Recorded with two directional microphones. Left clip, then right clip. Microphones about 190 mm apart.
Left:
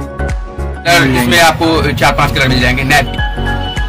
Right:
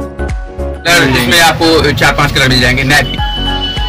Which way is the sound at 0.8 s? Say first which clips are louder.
Right 1 dB; 5° right (ahead or behind).